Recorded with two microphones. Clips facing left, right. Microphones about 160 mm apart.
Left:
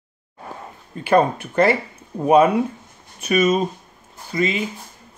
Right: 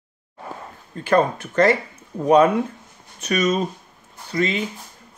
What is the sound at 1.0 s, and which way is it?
Speech, 10° left (ahead or behind).